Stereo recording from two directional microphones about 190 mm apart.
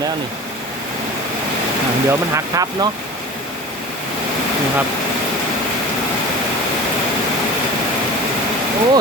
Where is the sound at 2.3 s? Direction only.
20° right (ahead or behind).